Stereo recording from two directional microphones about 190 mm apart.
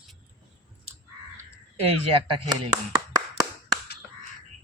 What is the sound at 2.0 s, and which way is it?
Speech, 30° right (ahead or behind).